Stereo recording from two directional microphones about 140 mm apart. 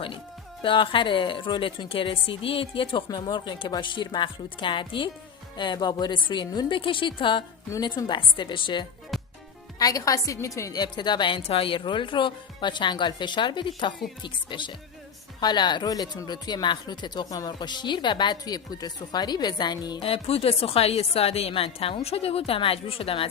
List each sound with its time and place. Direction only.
0.6 s speech: 35° left (ahead or behind)
9.7 s speech: 25° left (ahead or behind)
20.0 s a woman's voice: 45° left (ahead or behind)